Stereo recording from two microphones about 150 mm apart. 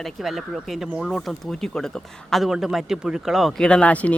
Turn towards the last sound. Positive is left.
turn(degrees=10)  # may be behind; listen again after turning